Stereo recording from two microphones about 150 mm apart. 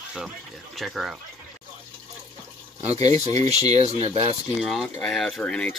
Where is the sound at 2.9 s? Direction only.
25° left (ahead or behind).